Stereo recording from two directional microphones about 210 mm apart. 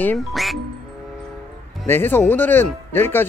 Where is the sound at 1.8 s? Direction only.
10° left (ahead or behind).